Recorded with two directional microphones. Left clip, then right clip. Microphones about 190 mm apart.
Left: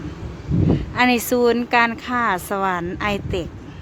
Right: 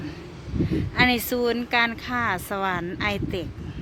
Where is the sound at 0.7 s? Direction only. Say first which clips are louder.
Left 3 dB; 5° left (ahead or behind).